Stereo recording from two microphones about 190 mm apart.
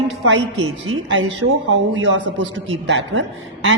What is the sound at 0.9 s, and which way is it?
A woman's voice, 75° right (ahead or behind).